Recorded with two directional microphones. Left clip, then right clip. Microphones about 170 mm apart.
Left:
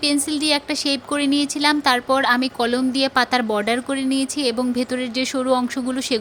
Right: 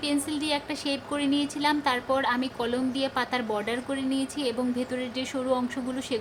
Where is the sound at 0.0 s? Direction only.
30° left (ahead or behind).